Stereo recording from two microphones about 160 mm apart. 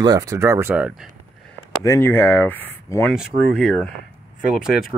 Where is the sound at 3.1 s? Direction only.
Centre (ahead or behind).